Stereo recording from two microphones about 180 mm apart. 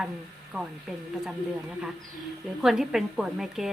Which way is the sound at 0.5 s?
5° right (ahead or behind).